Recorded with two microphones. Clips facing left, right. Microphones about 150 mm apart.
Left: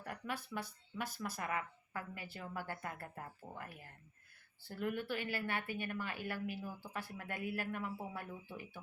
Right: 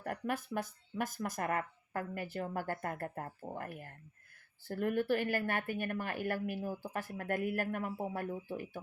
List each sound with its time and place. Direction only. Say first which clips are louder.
0.0 s speech: right 7 dB; 50° right (ahead or behind)